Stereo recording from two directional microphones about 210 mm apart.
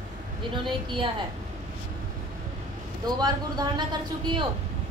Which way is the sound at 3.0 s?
20° right (ahead or behind).